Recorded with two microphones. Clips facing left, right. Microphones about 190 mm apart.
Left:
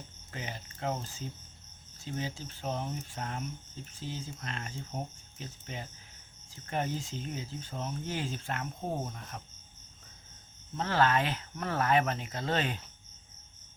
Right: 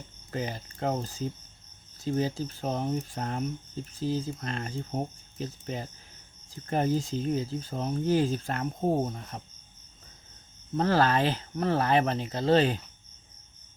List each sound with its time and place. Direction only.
0.3 s speech: 40° right (ahead or behind)
10.8 s speech: 40° right (ahead or behind)